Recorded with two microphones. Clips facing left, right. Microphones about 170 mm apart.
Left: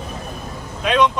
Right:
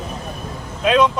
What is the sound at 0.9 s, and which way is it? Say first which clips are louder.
Speech: right 2 dB; 10° right (ahead or behind).